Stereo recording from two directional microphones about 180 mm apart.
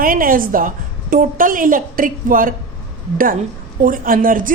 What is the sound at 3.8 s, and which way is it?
Speech, 50° right (ahead or behind).